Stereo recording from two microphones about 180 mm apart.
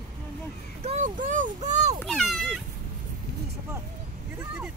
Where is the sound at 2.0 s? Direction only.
Centre (ahead or behind).